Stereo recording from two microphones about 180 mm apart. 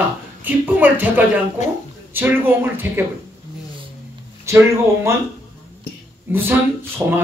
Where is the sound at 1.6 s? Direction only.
40° left (ahead or behind).